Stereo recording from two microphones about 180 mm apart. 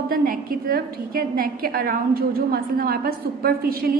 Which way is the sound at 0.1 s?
55° right (ahead or behind).